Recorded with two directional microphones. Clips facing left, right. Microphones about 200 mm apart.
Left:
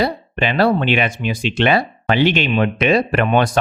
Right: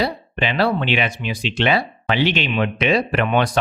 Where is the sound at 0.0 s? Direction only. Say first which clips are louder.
Left 3 dB; 50° left (ahead or behind).